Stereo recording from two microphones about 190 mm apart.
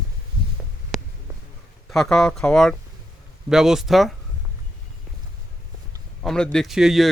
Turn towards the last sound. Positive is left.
turn(degrees=0)  # may be behind; listen again after turning